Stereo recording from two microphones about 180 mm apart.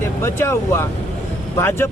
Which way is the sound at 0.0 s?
15° left (ahead or behind).